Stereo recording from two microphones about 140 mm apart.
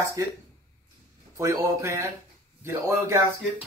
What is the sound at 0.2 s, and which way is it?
A man's voice, 25° right (ahead or behind).